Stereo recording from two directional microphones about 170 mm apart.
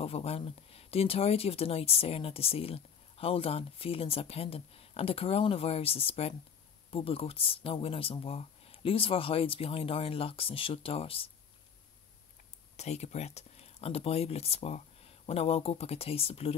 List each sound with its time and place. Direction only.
0.0 s speech: 35° left (ahead or behind)
12.7 s speech: 40° left (ahead or behind)